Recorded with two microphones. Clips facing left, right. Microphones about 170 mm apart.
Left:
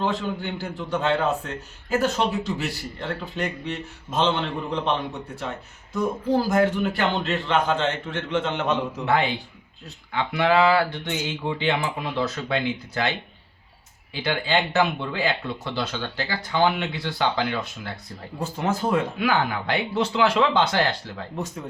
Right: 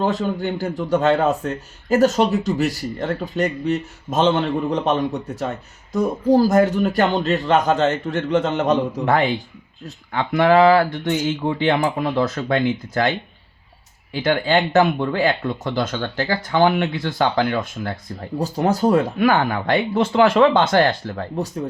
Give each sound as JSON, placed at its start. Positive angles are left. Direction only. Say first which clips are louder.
{"t": 0.0, "sound": "a man's voice", "louder": "right 5 dB", "side_deg": -40}